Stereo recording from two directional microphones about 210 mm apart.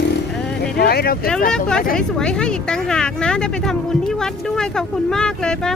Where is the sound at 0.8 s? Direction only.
45° left (ahead or behind).